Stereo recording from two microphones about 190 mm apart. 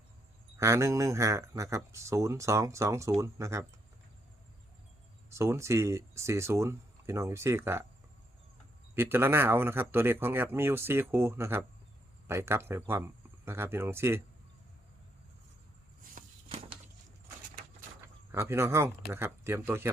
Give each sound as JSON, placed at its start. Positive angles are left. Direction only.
{"t": 0.6, "sound": "speech", "side_deg": -15}
{"t": 5.3, "sound": "speech", "side_deg": -15}
{"t": 9.0, "sound": "speech", "side_deg": -10}
{"t": 16.1, "sound": "a sound", "side_deg": -30}
{"t": 18.3, "sound": "speech", "side_deg": -15}